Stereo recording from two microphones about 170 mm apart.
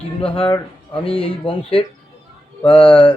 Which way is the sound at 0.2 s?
35° left (ahead or behind).